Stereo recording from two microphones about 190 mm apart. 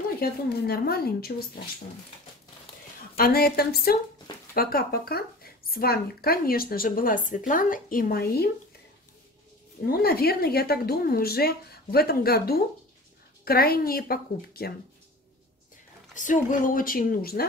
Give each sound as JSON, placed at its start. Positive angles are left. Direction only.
{"t": 0.2, "sound": "speech", "side_deg": 55}
{"t": 3.2, "sound": "speech", "side_deg": 55}
{"t": 9.8, "sound": "a woman's voice", "side_deg": 55}
{"t": 16.2, "sound": "speech", "side_deg": 40}